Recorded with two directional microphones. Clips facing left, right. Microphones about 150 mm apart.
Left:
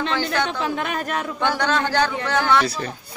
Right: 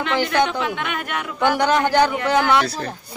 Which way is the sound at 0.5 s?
35° left (ahead or behind).